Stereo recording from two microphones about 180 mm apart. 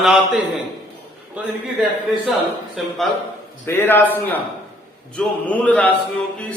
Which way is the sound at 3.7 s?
10° left (ahead or behind).